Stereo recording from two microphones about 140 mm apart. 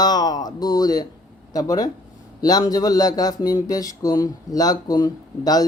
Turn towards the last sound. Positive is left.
turn(degrees=25)  # may be behind; listen again after turning